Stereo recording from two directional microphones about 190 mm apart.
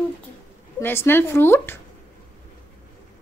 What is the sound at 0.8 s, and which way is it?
A child's voice, 10° left (ahead or behind).